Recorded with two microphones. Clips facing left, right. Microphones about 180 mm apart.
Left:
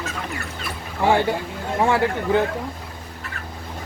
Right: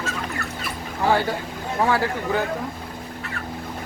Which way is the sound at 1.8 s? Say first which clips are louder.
Left 2 dB; 25° left (ahead or behind).